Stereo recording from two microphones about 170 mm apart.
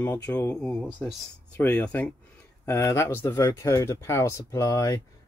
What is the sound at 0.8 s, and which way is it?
Speech, 5° right (ahead or behind).